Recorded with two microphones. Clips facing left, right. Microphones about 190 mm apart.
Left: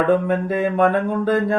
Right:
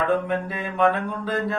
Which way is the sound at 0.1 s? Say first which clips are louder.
Left 6 dB; 45° left (ahead or behind).